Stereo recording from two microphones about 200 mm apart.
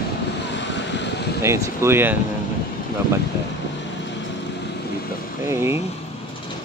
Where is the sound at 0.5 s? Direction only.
60° left (ahead or behind).